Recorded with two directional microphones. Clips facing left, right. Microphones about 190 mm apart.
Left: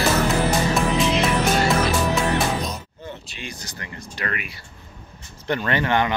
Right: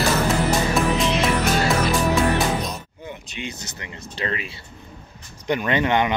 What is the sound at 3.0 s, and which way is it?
Speech, 20° right (ahead or behind).